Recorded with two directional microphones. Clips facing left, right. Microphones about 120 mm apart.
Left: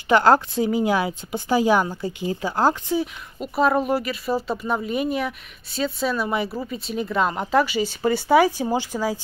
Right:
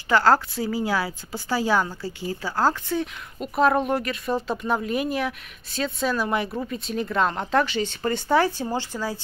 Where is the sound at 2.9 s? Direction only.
Centre (ahead or behind).